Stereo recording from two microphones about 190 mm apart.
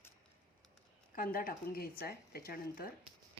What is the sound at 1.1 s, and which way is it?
Speech, 50° left (ahead or behind).